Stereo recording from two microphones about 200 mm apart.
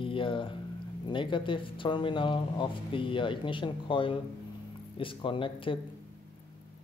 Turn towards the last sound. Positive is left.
turn(degrees=25)  # may be behind; listen again after turning